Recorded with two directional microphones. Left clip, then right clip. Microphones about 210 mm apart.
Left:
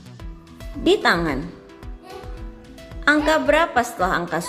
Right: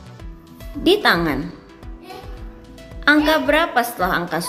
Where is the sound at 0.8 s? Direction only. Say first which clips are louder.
Right 2 dB; 5° left (ahead or behind).